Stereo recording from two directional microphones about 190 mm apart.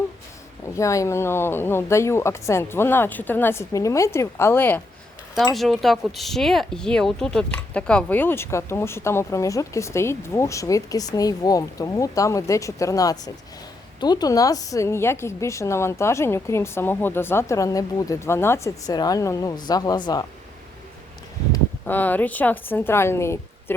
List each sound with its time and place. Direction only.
0.8 s speech: 15° left (ahead or behind)
21.5 s speech: 10° left (ahead or behind)